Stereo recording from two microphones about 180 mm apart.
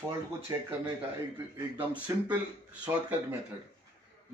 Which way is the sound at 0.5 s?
20° right (ahead or behind).